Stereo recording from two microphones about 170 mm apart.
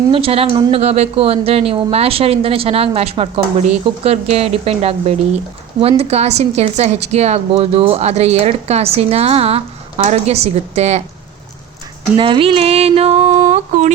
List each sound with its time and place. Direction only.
0.1 s speech: 35° right (ahead or behind)
12.1 s speech: 30° right (ahead or behind); by 13.9 s 45° right (ahead or behind)